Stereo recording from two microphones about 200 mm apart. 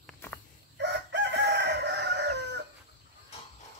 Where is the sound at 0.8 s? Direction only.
60° right (ahead or behind).